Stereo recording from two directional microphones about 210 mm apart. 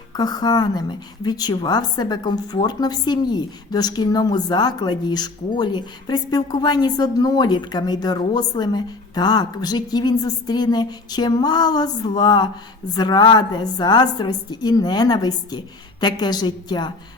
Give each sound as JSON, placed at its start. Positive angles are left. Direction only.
{"t": 0.2, "sound": "a woman's voice", "side_deg": 20}